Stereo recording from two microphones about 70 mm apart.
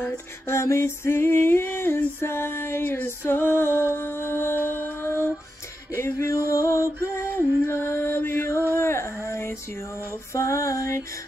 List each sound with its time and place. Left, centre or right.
0.0 s female singing: left
3.3 s music: left
7.2 s music: left
8.7 s a sound: left
10.3 s music: left